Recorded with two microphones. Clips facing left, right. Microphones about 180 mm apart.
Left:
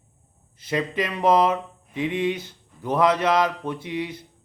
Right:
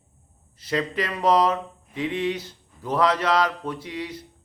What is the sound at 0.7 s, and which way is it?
Speech, 20° left (ahead or behind).